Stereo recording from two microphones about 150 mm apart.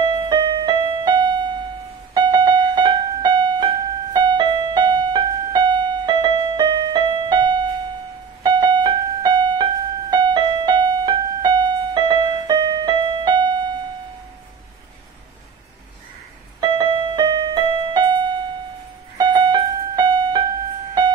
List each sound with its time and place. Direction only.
0.3 s music: 30° right (ahead or behind)
16.6 s music: 30° right (ahead or behind)